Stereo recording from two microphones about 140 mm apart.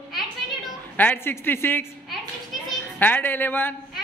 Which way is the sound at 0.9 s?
15° left (ahead or behind).